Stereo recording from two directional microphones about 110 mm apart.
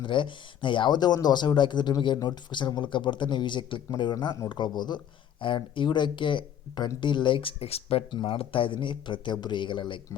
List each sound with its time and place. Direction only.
0.0 s speech: 50° left (ahead or behind); by 8.0 s 65° left (ahead or behind)
8.1 s speech: 50° left (ahead or behind)